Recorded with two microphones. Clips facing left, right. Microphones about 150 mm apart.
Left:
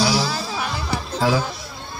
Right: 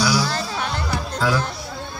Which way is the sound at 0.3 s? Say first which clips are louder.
Right 1 dB; 5° left (ahead or behind).